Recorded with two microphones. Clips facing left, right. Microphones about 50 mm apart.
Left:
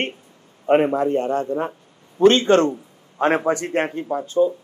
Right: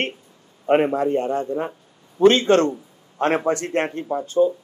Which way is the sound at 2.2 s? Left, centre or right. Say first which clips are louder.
Left 1 dB; left.